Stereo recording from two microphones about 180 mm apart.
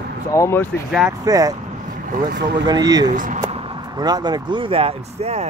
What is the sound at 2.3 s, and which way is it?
Speech, 70° right (ahead or behind).